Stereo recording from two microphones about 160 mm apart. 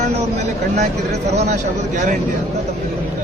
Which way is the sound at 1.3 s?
45° right (ahead or behind).